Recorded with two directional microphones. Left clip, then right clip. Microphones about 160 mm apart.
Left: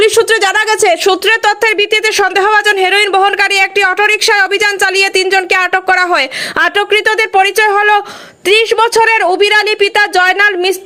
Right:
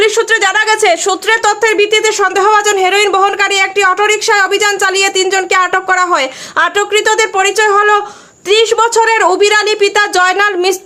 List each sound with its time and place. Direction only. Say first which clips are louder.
0.0 s a woman's voice: left 1 dB; 20° left (ahead or behind)
0.8 s a woman's voice: left 1 dB; 10° left (ahead or behind)